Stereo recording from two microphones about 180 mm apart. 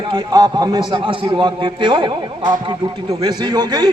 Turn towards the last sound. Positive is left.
turn(degrees=-25)  # may be behind; listen again after turning